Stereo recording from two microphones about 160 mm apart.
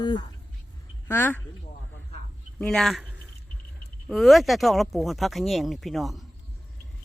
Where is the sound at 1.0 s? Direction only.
15° left (ahead or behind).